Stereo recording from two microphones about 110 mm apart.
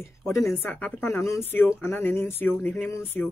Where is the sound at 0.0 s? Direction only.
25° left (ahead or behind).